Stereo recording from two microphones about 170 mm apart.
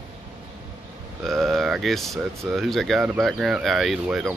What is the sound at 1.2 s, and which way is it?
Speech, centre (ahead or behind).